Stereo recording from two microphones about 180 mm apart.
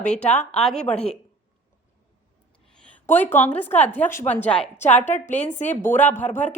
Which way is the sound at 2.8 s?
10° left (ahead or behind).